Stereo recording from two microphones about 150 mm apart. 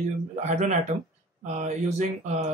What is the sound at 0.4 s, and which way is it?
Speech, 50° right (ahead or behind).